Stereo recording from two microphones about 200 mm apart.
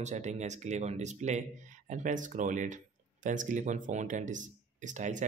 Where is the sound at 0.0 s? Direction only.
35° right (ahead or behind).